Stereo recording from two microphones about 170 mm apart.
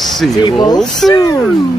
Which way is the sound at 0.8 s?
Centre (ahead or behind).